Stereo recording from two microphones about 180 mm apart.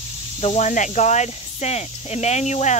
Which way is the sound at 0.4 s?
40° left (ahead or behind).